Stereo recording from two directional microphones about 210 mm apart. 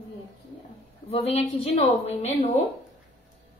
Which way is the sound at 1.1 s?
30° left (ahead or behind).